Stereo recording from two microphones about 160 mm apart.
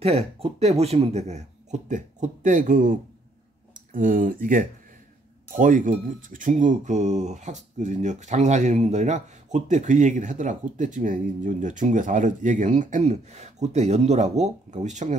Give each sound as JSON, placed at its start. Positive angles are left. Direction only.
{"t": 0.0, "sound": "speech", "side_deg": -40}